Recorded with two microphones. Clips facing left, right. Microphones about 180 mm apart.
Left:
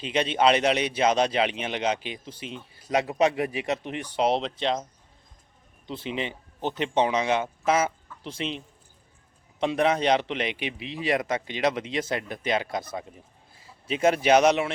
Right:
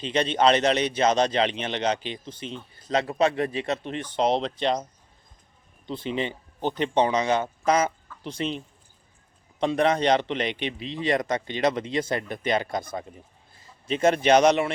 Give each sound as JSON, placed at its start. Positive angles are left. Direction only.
{"t": 0.0, "sound": "speech", "side_deg": 5}
{"t": 5.8, "sound": "a man's voice", "side_deg": 0}